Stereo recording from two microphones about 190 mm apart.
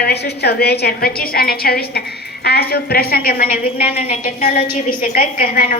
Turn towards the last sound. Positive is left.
turn(degrees=50)  # may be behind; listen again after turning